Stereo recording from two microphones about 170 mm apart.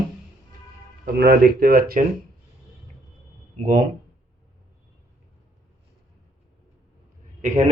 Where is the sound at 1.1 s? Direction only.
65° right (ahead or behind).